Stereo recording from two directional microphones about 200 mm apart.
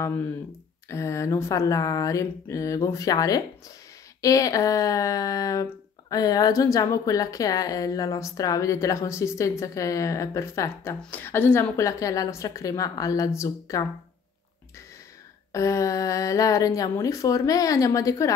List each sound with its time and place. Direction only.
0.8 s speech: 15° left (ahead or behind)
15.5 s speech: 15° left (ahead or behind)